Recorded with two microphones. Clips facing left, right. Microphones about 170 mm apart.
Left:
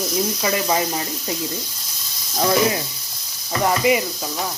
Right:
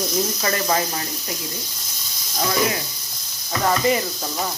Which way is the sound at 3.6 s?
10° left (ahead or behind).